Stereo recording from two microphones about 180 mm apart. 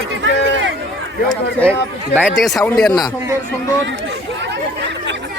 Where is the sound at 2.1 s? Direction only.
5° right (ahead or behind).